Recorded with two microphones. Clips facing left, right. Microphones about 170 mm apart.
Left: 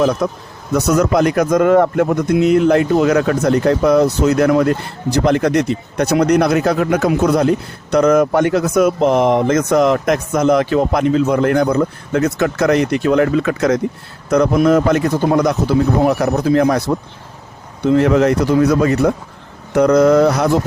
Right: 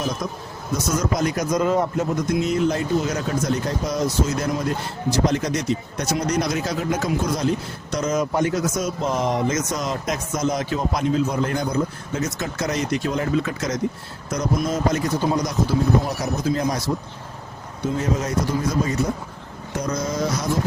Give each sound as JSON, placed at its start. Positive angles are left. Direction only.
{"t": 0.0, "sound": "speech", "side_deg": 65}